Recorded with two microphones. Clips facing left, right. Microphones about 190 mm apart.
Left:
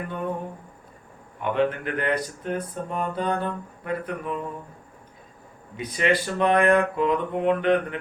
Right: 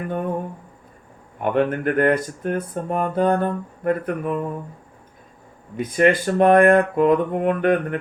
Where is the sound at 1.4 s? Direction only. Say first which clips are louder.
Right 4 dB; 50° right (ahead or behind).